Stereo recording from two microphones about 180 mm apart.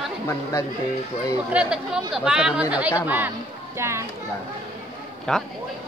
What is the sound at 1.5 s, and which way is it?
Speech, 5° right (ahead or behind).